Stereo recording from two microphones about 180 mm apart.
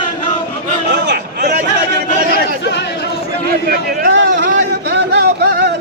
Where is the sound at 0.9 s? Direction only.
70° right (ahead or behind).